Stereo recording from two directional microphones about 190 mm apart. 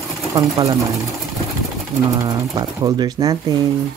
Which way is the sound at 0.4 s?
20° right (ahead or behind).